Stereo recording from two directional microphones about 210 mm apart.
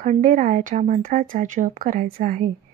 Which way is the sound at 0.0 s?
35° right (ahead or behind).